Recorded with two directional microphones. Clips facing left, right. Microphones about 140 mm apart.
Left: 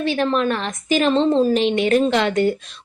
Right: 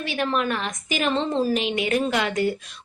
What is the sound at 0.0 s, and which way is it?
A woman's voice, 30° left (ahead or behind).